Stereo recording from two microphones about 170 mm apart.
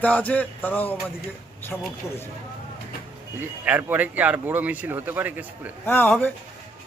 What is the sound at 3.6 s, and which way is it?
Speech, 10° right (ahead or behind).